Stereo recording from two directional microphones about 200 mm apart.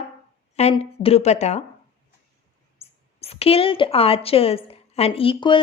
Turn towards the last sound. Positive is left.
turn(degrees=25)  # may be behind; listen again after turning